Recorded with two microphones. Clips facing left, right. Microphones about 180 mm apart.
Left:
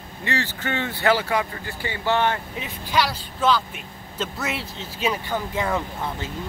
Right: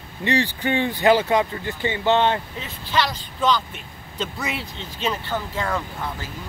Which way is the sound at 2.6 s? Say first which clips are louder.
Left 3 dB; 10° left (ahead or behind).